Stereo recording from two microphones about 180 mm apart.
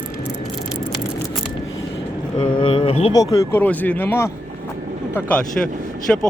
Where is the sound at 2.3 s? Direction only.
25° left (ahead or behind).